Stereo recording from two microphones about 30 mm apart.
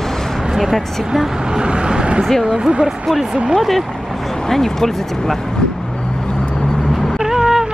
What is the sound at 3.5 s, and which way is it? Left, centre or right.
Speech, centre.